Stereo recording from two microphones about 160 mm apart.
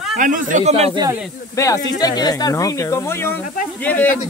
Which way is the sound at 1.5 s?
20° left (ahead or behind).